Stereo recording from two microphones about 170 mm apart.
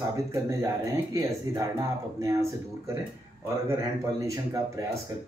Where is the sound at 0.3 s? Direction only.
20° right (ahead or behind).